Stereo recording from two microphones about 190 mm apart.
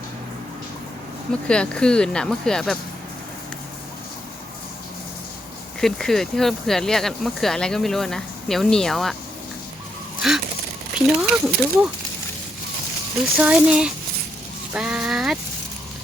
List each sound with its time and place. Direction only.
1.5 s speech: 5° left (ahead or behind)
5.8 s speech: centre (ahead or behind)
10.2 s bird: centre (ahead or behind)
10.9 s speech: 5° right (ahead or behind)
13.4 s speech: 5° right (ahead or behind)